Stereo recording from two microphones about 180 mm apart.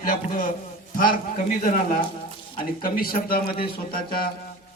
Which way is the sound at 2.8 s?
55° left (ahead or behind).